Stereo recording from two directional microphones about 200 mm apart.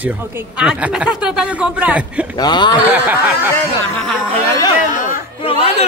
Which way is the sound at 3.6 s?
5° left (ahead or behind).